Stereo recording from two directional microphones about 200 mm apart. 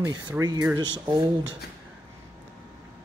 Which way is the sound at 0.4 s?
20° right (ahead or behind).